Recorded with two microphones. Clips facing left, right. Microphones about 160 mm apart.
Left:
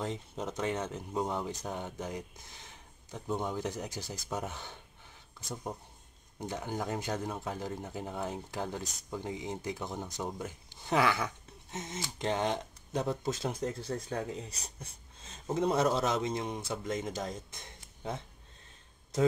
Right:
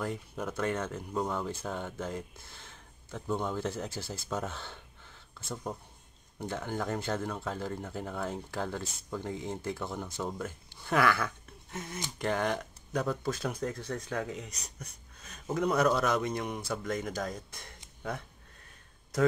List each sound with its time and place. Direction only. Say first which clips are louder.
0.0 s speech: right 1 dB; 20° left (ahead or behind)